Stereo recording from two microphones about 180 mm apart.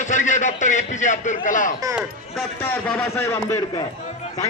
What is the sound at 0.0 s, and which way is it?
A man's voice, 45° left (ahead or behind).